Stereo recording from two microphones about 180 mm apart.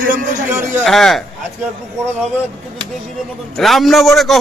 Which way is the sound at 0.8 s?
Centre (ahead or behind).